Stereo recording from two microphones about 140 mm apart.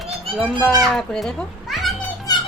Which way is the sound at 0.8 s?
Centre (ahead or behind).